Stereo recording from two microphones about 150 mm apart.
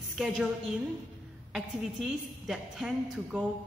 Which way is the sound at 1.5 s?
Centre (ahead or behind).